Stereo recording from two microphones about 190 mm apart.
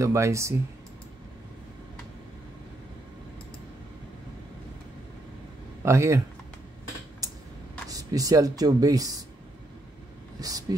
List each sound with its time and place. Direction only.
0.0 s speech: 15° right (ahead or behind)
5.9 s speech: 15° right (ahead or behind)
7.9 s speech: 20° right (ahead or behind)
10.4 s speech: 20° right (ahead or behind)